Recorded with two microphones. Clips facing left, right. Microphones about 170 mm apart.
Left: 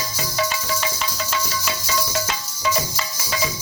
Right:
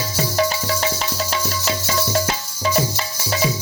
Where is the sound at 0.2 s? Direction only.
50° right (ahead or behind).